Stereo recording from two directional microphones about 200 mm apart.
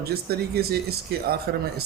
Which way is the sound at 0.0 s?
50° right (ahead or behind).